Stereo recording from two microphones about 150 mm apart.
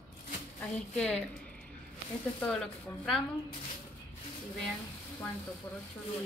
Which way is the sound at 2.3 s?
5° left (ahead or behind).